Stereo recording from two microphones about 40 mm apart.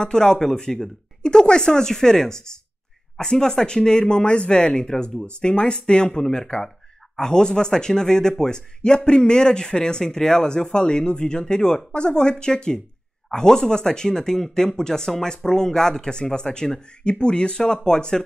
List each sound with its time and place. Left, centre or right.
0.0 s speech: centre